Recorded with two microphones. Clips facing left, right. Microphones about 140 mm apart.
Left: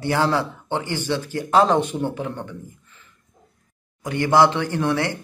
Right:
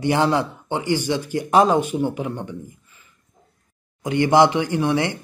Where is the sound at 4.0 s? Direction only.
20° right (ahead or behind).